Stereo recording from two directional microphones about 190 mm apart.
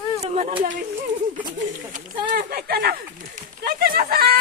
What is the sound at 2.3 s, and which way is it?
Speech, 50° right (ahead or behind).